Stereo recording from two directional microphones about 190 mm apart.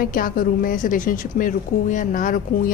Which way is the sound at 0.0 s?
50° left (ahead or behind).